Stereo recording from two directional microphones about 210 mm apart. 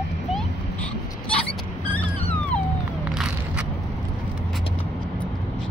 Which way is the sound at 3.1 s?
Centre (ahead or behind).